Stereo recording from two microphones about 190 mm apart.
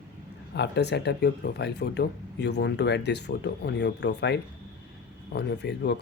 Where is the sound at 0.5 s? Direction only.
60° left (ahead or behind).